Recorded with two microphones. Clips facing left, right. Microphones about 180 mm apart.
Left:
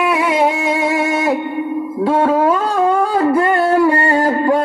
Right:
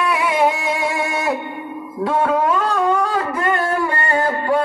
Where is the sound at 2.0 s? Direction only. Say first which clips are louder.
Left 4 dB; 30° left (ahead or behind).